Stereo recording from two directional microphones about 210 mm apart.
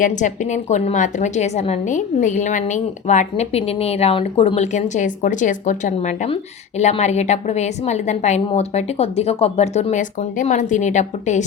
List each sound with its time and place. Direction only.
0.0 s a woman's voice: 35° left (ahead or behind)